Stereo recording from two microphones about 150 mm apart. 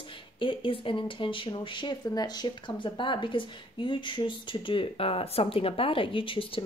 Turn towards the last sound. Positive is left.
turn(degrees=35)  # may be behind; listen again after turning